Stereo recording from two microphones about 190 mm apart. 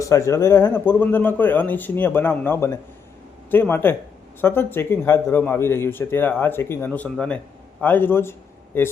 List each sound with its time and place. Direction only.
0.0 s a man's voice: 15° left (ahead or behind)